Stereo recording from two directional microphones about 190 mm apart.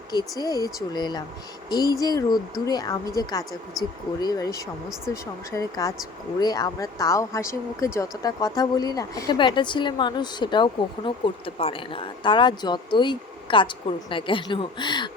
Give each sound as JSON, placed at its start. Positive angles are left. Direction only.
{"t": 0.1, "sound": "speech", "side_deg": 20}